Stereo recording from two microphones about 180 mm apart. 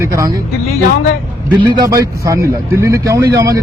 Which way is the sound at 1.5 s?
25° right (ahead or behind).